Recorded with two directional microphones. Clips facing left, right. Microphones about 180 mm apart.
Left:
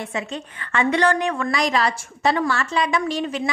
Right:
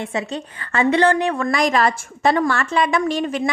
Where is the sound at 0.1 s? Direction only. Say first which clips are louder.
Right 3 dB; 35° right (ahead or behind).